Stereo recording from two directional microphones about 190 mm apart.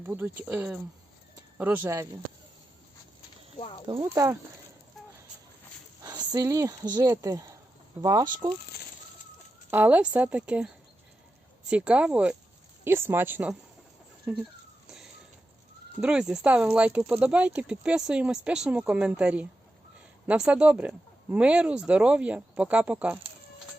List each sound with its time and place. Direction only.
0.0 s speech: 10° right (ahead or behind)
3.6 s speech: 30° left (ahead or behind)
3.8 s speech: 20° right (ahead or behind)
6.0 s speech: 20° right (ahead or behind)
9.6 s speech: 10° right (ahead or behind)
11.7 s speech: 5° right (ahead or behind)
16.0 s speech: 5° right (ahead or behind)